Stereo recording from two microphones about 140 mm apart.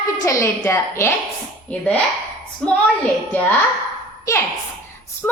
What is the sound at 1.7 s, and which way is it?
Speech, 10° left (ahead or behind).